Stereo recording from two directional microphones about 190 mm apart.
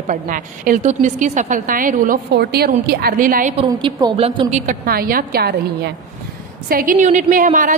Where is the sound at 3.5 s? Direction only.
30° right (ahead or behind).